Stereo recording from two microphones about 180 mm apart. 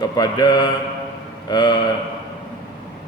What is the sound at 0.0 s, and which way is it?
A man's voice, 25° left (ahead or behind).